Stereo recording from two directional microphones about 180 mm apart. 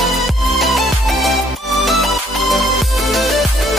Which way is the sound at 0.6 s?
Centre (ahead or behind).